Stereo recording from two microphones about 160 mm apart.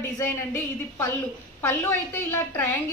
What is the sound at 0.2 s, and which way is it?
A woman's voice, 15° left (ahead or behind).